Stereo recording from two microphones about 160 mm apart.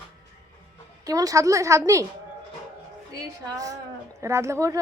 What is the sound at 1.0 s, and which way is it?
A woman's voice, 20° right (ahead or behind).